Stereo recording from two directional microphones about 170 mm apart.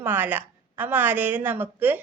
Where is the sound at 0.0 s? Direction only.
10° right (ahead or behind).